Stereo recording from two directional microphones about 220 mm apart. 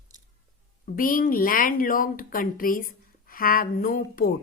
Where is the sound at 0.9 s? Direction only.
40° left (ahead or behind).